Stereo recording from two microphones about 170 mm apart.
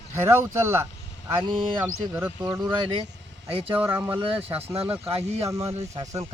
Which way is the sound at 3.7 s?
10° right (ahead or behind).